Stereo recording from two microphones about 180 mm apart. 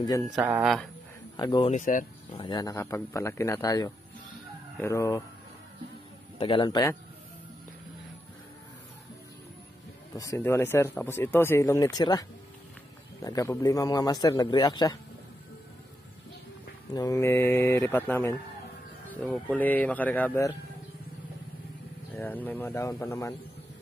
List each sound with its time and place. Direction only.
0.0 s a man's voice: 20° left (ahead or behind)
0.4 s speech: 5° right (ahead or behind)
1.3 s a man's voice: 25° left (ahead or behind)
1.7 s speech: 45° left (ahead or behind)
2.3 s a man's voice: 25° left (ahead or behind)
6.3 s a man's voice: 30° left (ahead or behind)
10.1 s a man's voice: 15° left (ahead or behind)
16.9 s speech: 20° left (ahead or behind)
22.1 s speech: 10° left (ahead or behind)